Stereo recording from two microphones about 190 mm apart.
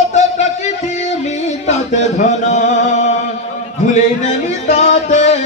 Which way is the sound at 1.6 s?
35° left (ahead or behind).